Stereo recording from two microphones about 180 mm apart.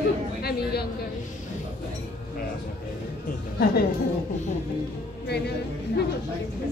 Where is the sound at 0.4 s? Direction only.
60° left (ahead or behind).